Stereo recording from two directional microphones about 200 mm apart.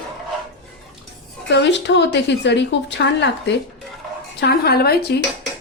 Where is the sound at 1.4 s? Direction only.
60° left (ahead or behind).